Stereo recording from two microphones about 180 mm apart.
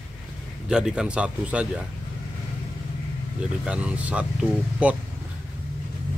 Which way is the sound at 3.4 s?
5° right (ahead or behind).